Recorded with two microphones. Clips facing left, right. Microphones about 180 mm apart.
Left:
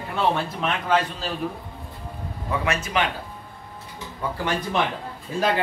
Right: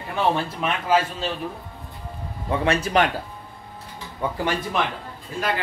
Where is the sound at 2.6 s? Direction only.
35° right (ahead or behind).